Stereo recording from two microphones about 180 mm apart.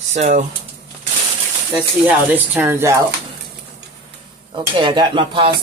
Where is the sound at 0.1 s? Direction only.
40° right (ahead or behind).